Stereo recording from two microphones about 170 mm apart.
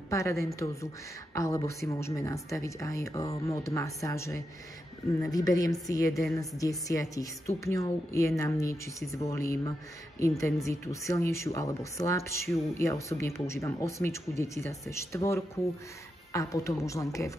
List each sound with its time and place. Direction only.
0.1 s a woman's voice: 20° left (ahead or behind)